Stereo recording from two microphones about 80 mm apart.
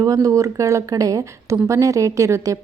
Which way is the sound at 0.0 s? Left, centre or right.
Right.